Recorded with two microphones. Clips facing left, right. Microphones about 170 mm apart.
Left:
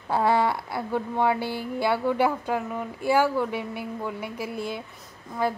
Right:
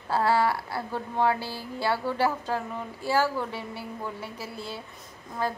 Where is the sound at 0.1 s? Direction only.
20° left (ahead or behind).